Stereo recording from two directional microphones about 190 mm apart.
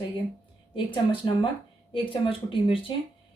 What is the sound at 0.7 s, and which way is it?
Speech, 25° left (ahead or behind).